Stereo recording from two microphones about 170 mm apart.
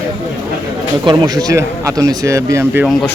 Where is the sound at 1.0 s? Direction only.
20° right (ahead or behind).